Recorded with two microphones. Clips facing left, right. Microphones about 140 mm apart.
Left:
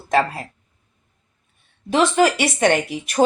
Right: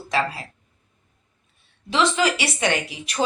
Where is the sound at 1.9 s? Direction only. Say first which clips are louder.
Left 4 dB; 50° left (ahead or behind).